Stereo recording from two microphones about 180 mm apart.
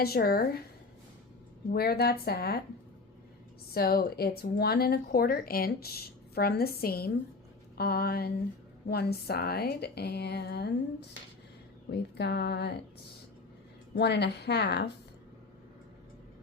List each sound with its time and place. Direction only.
0.0 s speech: 55° left (ahead or behind)
1.7 s speech: 60° left (ahead or behind)
3.8 s speech: 55° left (ahead or behind)
11.9 s speech: 65° left (ahead or behind)
13.9 s a woman's voice: 65° left (ahead or behind)